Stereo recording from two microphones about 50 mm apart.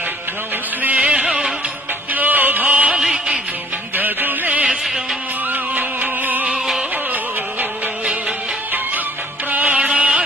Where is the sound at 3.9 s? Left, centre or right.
Right.